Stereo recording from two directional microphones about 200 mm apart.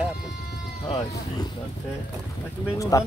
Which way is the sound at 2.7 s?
15° left (ahead or behind).